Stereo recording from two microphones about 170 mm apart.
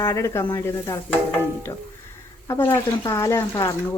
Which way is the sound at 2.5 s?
15° left (ahead or behind).